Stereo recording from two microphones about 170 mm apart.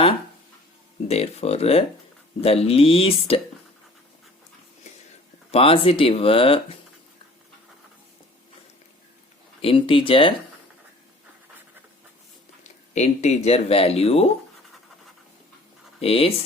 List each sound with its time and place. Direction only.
1.0 s speech: 40° left (ahead or behind)
5.5 s speech: 35° left (ahead or behind)
9.6 s speech: 30° left (ahead or behind)
12.6 s speech: 40° left (ahead or behind)
16.0 s speech: 35° left (ahead or behind)